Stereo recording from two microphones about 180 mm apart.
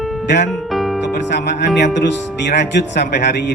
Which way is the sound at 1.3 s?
70° left (ahead or behind).